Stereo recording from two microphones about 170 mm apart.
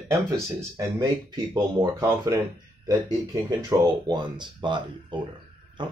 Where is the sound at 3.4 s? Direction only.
25° right (ahead or behind).